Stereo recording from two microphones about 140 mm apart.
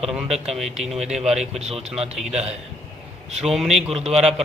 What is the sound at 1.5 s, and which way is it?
Speech, 50° right (ahead or behind).